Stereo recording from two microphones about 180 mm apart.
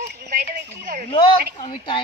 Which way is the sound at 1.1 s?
25° left (ahead or behind).